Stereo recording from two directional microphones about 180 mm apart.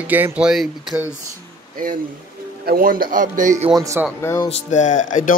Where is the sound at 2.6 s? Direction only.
50° right (ahead or behind).